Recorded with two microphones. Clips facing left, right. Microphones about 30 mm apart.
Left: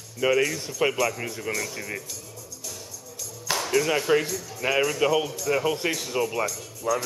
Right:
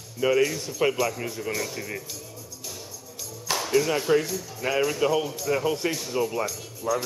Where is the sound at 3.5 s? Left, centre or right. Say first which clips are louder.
Even; centre.